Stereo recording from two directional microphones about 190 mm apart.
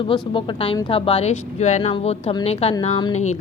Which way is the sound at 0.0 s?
25° left (ahead or behind).